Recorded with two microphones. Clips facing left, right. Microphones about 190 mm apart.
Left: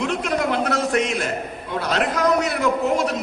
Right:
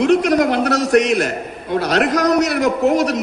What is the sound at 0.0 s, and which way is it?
A man's voice, 70° right (ahead or behind).